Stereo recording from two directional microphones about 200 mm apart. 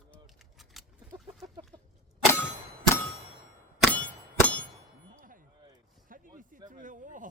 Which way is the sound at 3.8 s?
5° left (ahead or behind).